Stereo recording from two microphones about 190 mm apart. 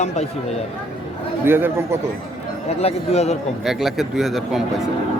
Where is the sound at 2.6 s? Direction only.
35° left (ahead or behind).